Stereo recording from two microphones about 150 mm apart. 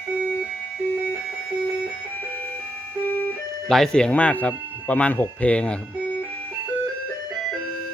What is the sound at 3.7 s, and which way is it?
Speech, 5° left (ahead or behind).